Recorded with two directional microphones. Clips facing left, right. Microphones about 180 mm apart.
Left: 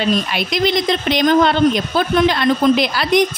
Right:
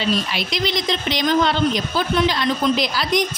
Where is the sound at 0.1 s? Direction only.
50° left (ahead or behind).